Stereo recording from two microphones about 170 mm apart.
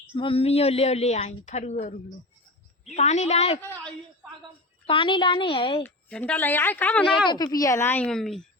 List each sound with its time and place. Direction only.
0.2 s a woman's voice: 35° left (ahead or behind)
3.6 s a woman's voice: 15° left (ahead or behind)
4.9 s a woman's voice: 30° left (ahead or behind)
5.8 s a woman's voice: 5° left (ahead or behind)
7.3 s a woman's voice: 25° left (ahead or behind); by 8.4 s centre (ahead or behind)